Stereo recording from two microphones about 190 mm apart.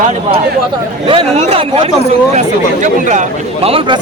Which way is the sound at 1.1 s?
30° right (ahead or behind).